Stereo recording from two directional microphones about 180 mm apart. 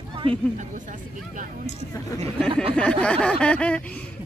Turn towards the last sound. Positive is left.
turn(degrees=5)  # may be behind; listen again after turning